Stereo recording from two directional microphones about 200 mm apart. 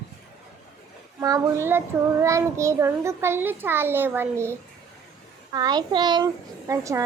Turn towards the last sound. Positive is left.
turn(degrees=-15)  # may be behind; listen again after turning